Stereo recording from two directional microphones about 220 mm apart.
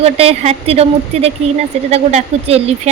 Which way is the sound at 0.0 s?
25° right (ahead or behind).